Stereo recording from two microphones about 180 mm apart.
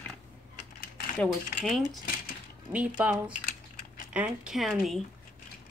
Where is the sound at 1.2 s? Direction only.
5° left (ahead or behind).